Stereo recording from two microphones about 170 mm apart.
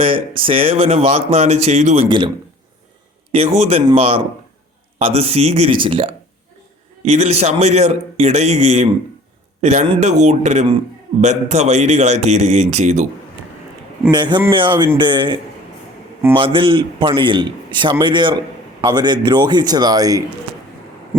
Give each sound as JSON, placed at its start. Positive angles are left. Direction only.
{"t": 0.0, "sound": "speech", "side_deg": -30}
{"t": 2.0, "sound": "a man's voice", "side_deg": -25}
{"t": 3.3, "sound": "speech", "side_deg": -35}
{"t": 14.1, "sound": "a man's voice", "side_deg": -25}